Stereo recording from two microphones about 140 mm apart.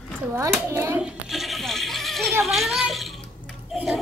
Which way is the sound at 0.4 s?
20° right (ahead or behind).